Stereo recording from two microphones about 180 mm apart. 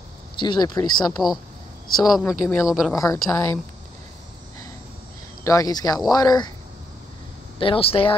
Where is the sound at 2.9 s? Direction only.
20° left (ahead or behind).